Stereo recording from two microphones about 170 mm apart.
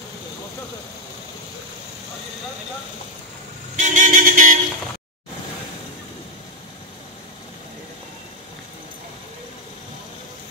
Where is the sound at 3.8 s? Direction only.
45° right (ahead or behind).